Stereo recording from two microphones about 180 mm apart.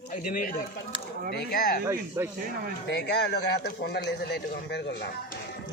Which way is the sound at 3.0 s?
70° left (ahead or behind).